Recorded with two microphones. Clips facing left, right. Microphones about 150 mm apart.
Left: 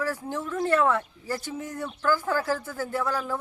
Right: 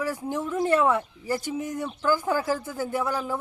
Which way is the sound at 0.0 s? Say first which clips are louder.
Right 2 dB; 15° right (ahead or behind).